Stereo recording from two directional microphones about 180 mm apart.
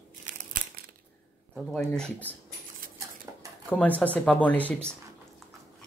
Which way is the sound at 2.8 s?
50° right (ahead or behind).